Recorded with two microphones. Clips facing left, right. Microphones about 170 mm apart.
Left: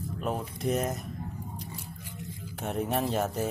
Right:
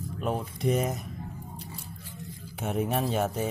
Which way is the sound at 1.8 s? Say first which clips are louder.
Left 1 dB; 15° left (ahead or behind).